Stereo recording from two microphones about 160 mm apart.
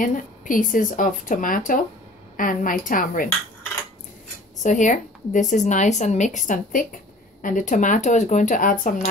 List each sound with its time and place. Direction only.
0.0 s speech: 55° left (ahead or behind)
4.6 s speech: 50° left (ahead or behind)